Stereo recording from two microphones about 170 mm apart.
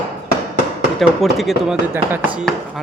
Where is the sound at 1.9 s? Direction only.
15° right (ahead or behind).